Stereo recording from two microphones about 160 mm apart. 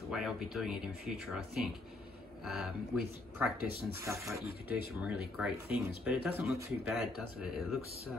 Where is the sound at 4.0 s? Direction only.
20° right (ahead or behind).